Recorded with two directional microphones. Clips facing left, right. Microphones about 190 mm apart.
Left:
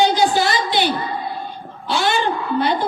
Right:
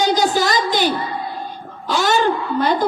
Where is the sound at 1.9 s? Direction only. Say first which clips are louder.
Right 2 dB; 45° right (ahead or behind).